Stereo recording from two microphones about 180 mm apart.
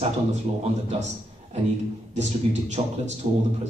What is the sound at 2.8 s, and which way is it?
Speech, 35° right (ahead or behind).